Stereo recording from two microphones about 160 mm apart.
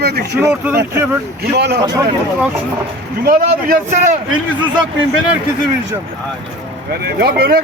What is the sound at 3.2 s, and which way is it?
Speech, 60° right (ahead or behind).